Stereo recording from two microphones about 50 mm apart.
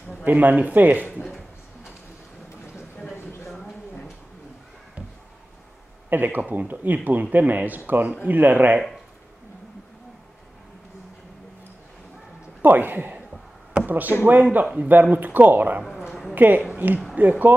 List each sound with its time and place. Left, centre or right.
0.2 s speech: right
3.4 s a sound: centre
6.0 s speech: right
12.6 s speech: right
16.1 s a sound: centre
16.3 s a woman's voice: right